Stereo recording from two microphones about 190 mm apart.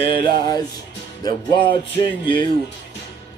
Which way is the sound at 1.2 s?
20° left (ahead or behind).